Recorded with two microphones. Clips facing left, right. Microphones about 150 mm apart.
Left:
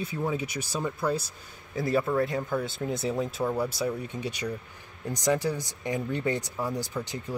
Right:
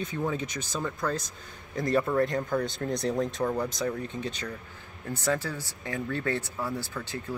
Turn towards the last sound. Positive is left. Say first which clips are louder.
# left 1 dB
turn(degrees=15)  # may be behind; listen again after turning